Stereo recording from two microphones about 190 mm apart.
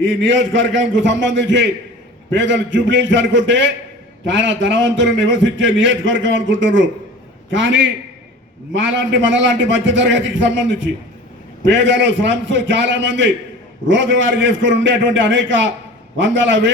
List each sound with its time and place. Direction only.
0.0 s a man's voice: 75° right (ahead or behind)